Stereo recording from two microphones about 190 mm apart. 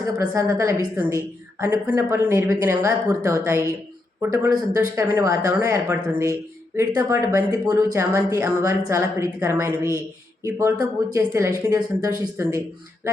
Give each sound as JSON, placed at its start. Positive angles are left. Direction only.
{"t": 0.0, "sound": "a woman's voice", "side_deg": -15}